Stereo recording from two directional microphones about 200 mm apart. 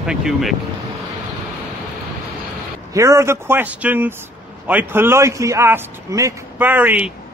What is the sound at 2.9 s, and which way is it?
Speech, 15° right (ahead or behind).